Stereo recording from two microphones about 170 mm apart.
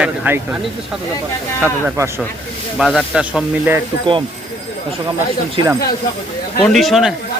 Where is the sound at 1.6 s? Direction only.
15° right (ahead or behind).